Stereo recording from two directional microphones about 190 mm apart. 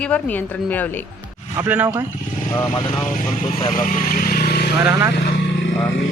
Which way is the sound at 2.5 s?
15° left (ahead or behind).